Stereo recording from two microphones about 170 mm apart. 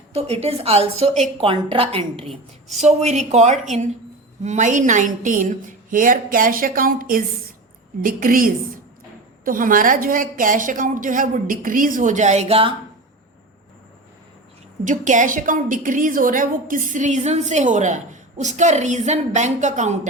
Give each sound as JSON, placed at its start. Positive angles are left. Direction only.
{"t": 0.1, "sound": "a woman's voice", "side_deg": -35}
{"t": 14.8, "sound": "a woman's voice", "side_deg": -50}